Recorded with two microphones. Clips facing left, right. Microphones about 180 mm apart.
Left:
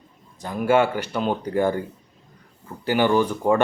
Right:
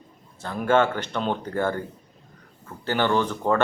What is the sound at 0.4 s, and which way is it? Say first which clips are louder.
Speech: left 2 dB; 10° left (ahead or behind).